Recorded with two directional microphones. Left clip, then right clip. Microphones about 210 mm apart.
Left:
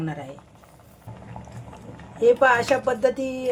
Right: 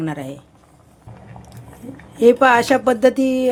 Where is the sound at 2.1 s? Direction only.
55° right (ahead or behind).